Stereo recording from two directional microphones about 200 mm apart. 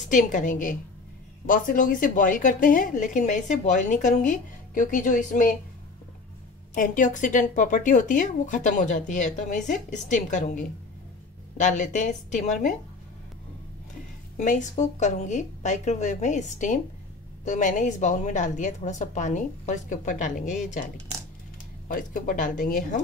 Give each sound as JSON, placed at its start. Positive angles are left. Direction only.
{"t": 0.1, "sound": "a woman's voice", "side_deg": 40}
{"t": 6.7, "sound": "a woman's voice", "side_deg": 40}
{"t": 14.3, "sound": "a woman's voice", "side_deg": 40}
{"t": 21.8, "sound": "a woman's voice", "side_deg": 40}